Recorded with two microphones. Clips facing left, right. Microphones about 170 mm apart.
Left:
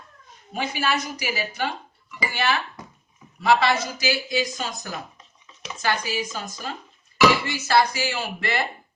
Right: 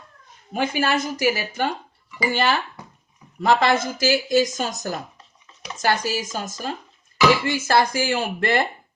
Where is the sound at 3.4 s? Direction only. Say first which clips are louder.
Right 2 dB; 50° right (ahead or behind).